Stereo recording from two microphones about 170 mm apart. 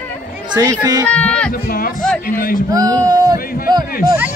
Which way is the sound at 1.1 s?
5° left (ahead or behind).